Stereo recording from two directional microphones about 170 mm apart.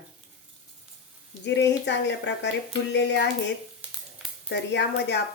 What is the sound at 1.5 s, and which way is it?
A woman's voice, 90° left.